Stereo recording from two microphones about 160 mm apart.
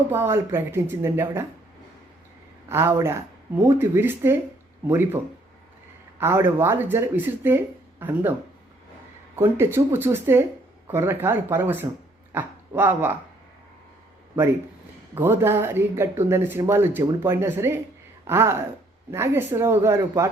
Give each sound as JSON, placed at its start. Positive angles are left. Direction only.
{"t": 0.1, "sound": "speech", "side_deg": -15}
{"t": 2.6, "sound": "speech", "side_deg": -15}
{"t": 15.1, "sound": "speech", "side_deg": -15}